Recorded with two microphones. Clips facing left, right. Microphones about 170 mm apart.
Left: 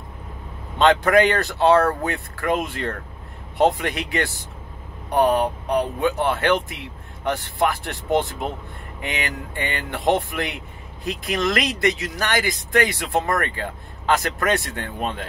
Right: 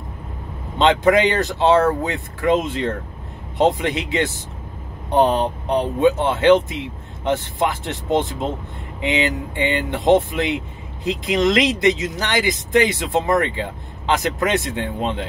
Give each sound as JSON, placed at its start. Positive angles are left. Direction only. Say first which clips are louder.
{"t": 0.7, "sound": "speech", "louder": "right 1 dB", "side_deg": -20}